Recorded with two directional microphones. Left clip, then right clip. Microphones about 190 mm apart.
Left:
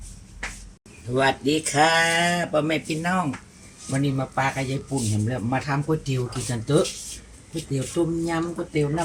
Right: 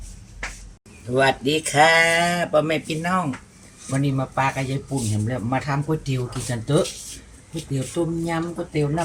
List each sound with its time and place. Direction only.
1.1 s speech: 20° right (ahead or behind)